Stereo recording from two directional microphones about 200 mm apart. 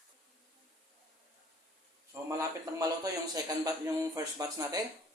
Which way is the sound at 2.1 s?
15° right (ahead or behind).